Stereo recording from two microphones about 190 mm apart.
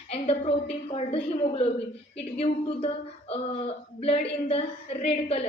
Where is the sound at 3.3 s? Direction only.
30° left (ahead or behind).